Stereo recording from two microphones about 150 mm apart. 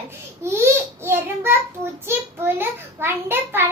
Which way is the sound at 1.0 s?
15° right (ahead or behind).